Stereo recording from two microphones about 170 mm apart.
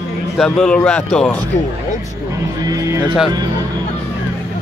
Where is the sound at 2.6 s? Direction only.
20° right (ahead or behind).